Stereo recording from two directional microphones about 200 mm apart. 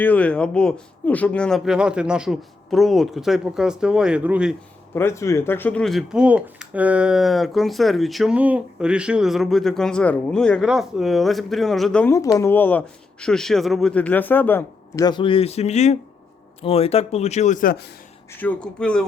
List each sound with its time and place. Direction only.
0.0 s speech: 5° left (ahead or behind)
4.9 s speech: 15° left (ahead or behind); by 17.8 s 45° left (ahead or behind)
18.3 s speech: 5° left (ahead or behind)